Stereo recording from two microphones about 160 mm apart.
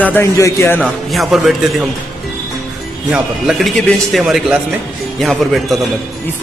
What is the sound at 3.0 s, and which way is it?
A man's voice, 5° right (ahead or behind).